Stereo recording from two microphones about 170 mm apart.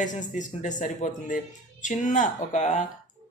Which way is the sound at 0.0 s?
45° left (ahead or behind).